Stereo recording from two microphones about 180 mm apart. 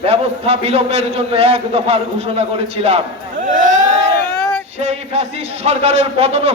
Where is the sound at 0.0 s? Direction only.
35° right (ahead or behind).